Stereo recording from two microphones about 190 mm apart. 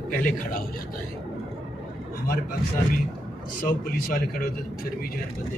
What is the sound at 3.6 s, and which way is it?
Speech, 50° left (ahead or behind).